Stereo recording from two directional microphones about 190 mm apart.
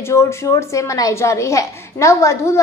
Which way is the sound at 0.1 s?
15° left (ahead or behind).